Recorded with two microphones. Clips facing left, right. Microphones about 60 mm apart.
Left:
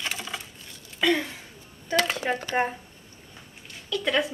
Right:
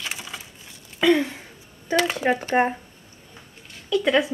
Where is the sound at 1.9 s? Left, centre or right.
Centre.